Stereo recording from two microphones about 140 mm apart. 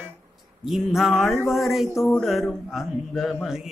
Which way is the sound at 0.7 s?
Centre (ahead or behind).